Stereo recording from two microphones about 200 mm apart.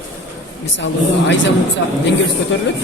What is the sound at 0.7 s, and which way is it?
Speech, 65° left (ahead or behind).